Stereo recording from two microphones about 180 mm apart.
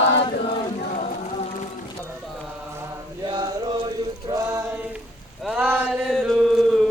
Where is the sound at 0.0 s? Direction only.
90° left.